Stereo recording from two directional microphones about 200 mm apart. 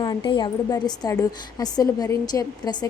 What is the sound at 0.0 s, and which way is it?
A woman's voice, 25° left (ahead or behind).